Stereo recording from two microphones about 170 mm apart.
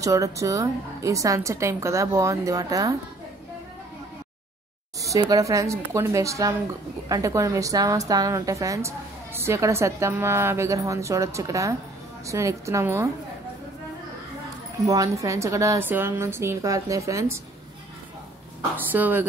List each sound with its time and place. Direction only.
0.0 s a woman's voice: 20° right (ahead or behind)
5.0 s a woman's voice: 20° right (ahead or behind)
14.9 s a woman's voice: 20° right (ahead or behind)
18.8 s a woman's voice: 10° right (ahead or behind)